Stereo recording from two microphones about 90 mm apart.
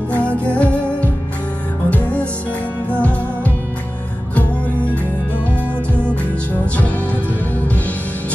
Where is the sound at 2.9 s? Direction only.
15° left (ahead or behind).